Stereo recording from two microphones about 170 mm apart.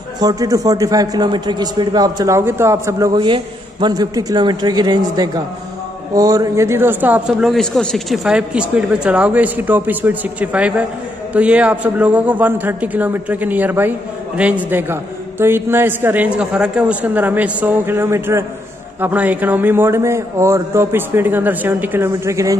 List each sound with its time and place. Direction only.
0.2 s a man's voice: 20° right (ahead or behind)
3.2 s a man's voice: 30° right (ahead or behind)